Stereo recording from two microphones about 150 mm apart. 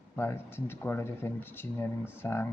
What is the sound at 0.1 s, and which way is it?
Speech, 15° left (ahead or behind).